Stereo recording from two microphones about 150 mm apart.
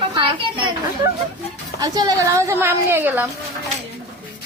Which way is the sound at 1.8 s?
25° right (ahead or behind).